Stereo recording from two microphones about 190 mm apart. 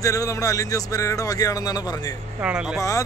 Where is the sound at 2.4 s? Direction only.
5° right (ahead or behind).